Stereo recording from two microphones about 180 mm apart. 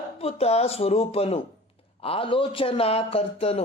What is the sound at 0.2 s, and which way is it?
Speech, 35° left (ahead or behind).